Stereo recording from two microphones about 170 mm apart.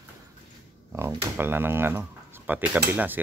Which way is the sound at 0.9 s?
15° right (ahead or behind).